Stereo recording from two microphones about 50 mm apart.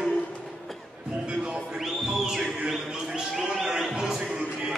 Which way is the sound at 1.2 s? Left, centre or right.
Right.